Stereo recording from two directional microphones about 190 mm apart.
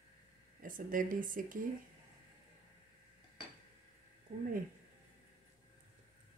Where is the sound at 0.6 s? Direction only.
45° right (ahead or behind).